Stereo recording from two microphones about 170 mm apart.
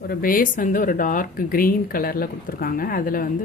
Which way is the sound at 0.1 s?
55° left (ahead or behind).